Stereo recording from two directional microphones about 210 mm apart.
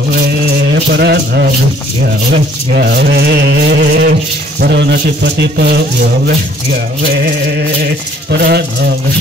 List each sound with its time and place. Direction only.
0.9 s rattle: 50° right (ahead or behind)
2.7 s rattle: 50° right (ahead or behind)
8.3 s rattle: 50° right (ahead or behind)